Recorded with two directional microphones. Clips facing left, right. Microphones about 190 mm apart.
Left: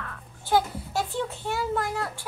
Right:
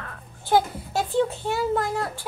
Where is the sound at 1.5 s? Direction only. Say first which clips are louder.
Right 4 dB; 15° right (ahead or behind).